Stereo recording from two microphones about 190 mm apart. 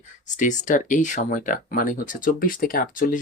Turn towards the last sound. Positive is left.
turn(degrees=45)  # may be behind; listen again after turning